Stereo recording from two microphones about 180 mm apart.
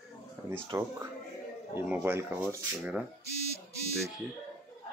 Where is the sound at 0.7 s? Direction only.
20° right (ahead or behind).